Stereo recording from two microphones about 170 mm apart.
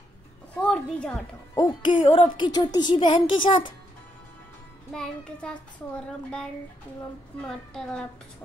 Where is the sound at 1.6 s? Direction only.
25° left (ahead or behind).